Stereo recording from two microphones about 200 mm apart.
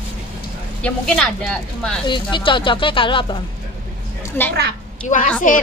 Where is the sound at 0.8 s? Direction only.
5° left (ahead or behind).